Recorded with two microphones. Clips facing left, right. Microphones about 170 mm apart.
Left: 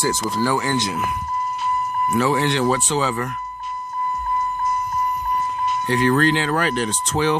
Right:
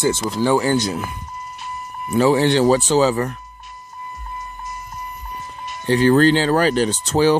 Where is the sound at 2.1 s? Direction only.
30° right (ahead or behind).